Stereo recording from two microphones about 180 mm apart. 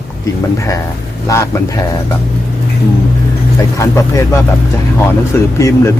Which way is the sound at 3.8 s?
15° left (ahead or behind).